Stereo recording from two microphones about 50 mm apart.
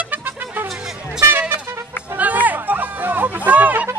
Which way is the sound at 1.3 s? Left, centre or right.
Right.